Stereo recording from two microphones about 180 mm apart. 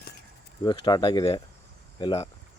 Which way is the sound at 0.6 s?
25° left (ahead or behind).